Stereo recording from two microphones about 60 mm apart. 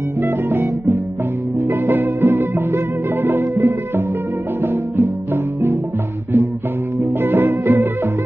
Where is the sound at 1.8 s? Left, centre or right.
Right.